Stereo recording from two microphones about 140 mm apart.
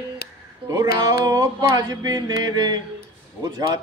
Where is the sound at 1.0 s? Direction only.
30° right (ahead or behind).